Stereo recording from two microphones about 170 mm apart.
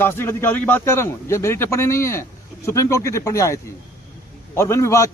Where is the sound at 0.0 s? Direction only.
15° left (ahead or behind).